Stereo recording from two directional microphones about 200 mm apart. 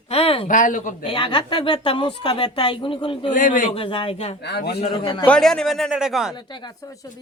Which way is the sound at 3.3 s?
40° left (ahead or behind).